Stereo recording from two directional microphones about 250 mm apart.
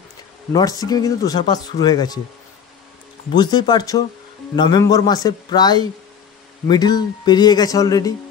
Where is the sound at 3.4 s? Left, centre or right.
Centre.